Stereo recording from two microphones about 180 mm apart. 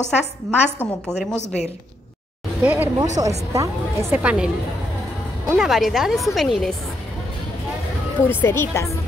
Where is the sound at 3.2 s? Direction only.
20° right (ahead or behind); by 4.4 s 5° right (ahead or behind).